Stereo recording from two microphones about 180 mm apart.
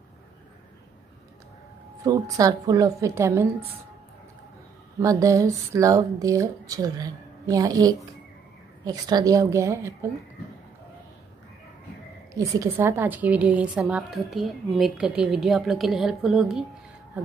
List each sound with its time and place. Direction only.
2.0 s speech: 20° right (ahead or behind)
5.0 s speech: 20° right (ahead or behind)
12.4 s a woman's voice: 15° right (ahead or behind)